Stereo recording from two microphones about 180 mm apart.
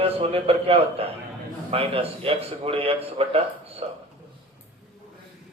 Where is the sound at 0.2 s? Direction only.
35° right (ahead or behind).